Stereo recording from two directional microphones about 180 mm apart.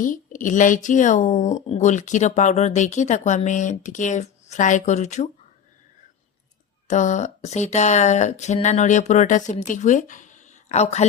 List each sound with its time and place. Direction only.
0.0 s speech: 45° left (ahead or behind)
6.8 s speech: 40° left (ahead or behind)